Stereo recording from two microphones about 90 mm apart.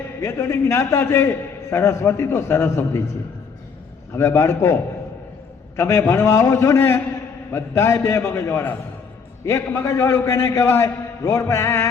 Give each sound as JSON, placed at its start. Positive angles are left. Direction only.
{"t": 0.2, "sound": "a man's voice", "side_deg": 35}
{"t": 4.1, "sound": "a man's voice", "side_deg": 30}